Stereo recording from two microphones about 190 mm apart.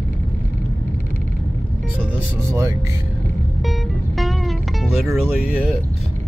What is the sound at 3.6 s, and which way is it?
Music, centre (ahead or behind).